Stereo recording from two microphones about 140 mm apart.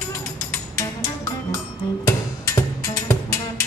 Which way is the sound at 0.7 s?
20° left (ahead or behind).